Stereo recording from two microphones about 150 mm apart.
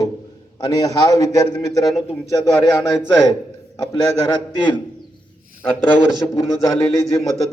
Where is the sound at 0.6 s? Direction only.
25° left (ahead or behind).